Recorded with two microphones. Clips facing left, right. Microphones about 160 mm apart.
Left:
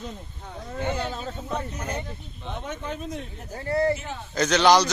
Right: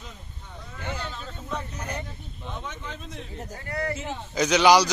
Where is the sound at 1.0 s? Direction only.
45° left (ahead or behind).